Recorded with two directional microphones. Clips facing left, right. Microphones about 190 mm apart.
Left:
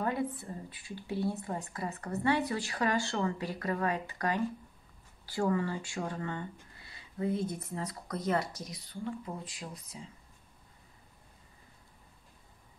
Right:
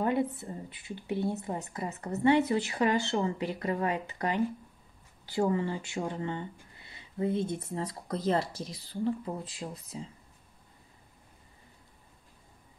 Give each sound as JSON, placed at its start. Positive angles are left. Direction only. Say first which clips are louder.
{"t": 0.0, "sound": "speech", "louder": "right 4 dB", "side_deg": -20}